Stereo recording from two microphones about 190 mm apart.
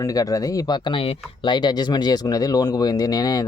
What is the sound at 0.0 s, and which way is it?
Speech, 20° left (ahead or behind).